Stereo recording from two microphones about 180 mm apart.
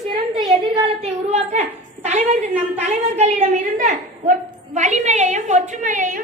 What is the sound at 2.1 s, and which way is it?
Speech, 40° right (ahead or behind).